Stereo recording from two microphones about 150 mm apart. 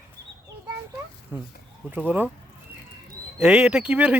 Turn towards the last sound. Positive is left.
turn(degrees=-10)  # may be behind; listen again after turning